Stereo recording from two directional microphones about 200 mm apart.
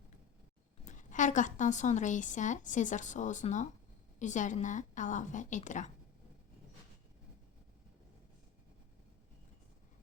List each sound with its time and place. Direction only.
0.9 s a woman's voice: 40° left (ahead or behind)